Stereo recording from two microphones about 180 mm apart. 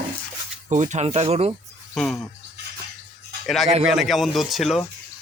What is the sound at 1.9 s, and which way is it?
Speech, centre (ahead or behind).